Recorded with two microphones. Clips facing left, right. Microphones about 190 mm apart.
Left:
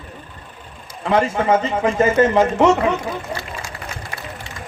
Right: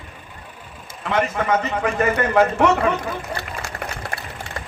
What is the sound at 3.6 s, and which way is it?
Run, 55° right (ahead or behind).